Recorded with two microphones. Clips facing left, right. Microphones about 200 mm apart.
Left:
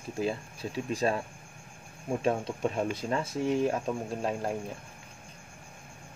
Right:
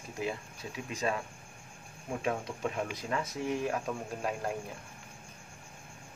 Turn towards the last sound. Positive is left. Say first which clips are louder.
# left 3 dB
turn(degrees=25)  # may be behind; listen again after turning